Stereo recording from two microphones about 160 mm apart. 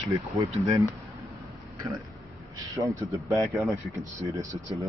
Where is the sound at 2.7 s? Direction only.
20° right (ahead or behind).